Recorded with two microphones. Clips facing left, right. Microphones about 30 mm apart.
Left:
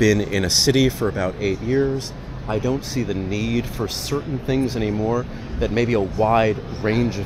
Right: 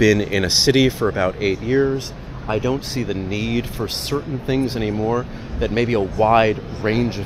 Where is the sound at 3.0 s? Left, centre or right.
Centre.